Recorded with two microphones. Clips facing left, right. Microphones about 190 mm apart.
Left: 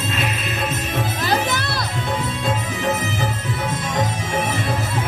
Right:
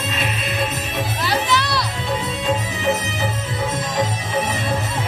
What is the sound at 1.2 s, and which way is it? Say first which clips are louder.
Music: right 2 dB; 50° left (ahead or behind).